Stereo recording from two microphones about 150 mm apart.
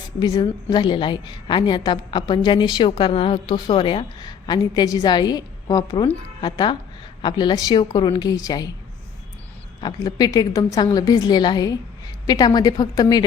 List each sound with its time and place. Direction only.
0.2 s a woman's voice: 25° left (ahead or behind)
9.8 s a woman's voice: 25° left (ahead or behind)